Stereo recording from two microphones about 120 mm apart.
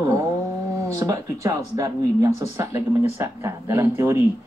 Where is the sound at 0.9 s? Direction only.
25° right (ahead or behind).